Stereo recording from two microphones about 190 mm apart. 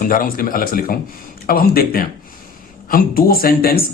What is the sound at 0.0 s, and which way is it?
Speech, 45° left (ahead or behind).